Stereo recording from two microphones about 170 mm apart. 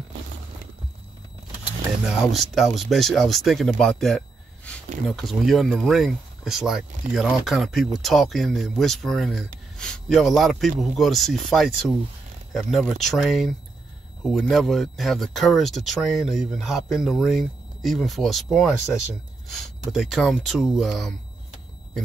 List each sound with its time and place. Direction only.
2.0 s speech: centre (ahead or behind)